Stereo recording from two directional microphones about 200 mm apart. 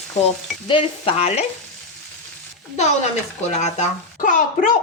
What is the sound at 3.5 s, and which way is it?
A woman's voice, 35° left (ahead or behind).